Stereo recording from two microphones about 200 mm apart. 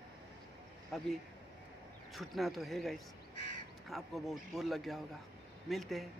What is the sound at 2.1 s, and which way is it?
Speech, centre (ahead or behind).